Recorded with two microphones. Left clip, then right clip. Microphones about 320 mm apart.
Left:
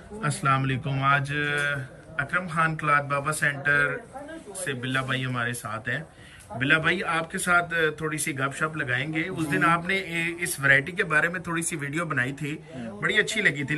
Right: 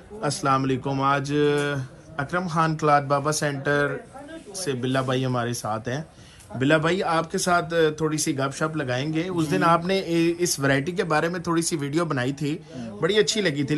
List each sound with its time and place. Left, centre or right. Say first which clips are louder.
0.2 s speech: right 2 dB; centre